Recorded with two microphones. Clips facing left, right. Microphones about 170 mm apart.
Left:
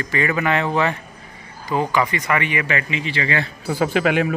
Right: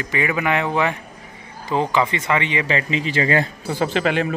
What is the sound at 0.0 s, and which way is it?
Speech, 15° right (ahead or behind).